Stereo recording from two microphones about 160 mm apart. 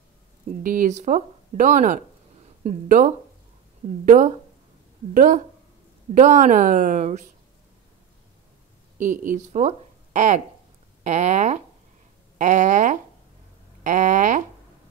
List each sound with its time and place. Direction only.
0.5 s speech: 55° right (ahead or behind)
8.9 s speech: 55° right (ahead or behind)